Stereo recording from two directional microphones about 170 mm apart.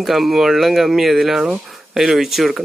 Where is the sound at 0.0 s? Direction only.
Centre (ahead or behind).